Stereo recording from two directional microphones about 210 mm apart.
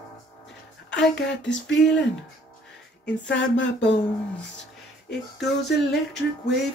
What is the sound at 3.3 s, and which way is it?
Speech, 60° left (ahead or behind).